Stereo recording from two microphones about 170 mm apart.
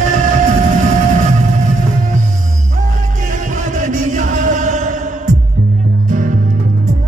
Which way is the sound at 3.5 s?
50° right (ahead or behind).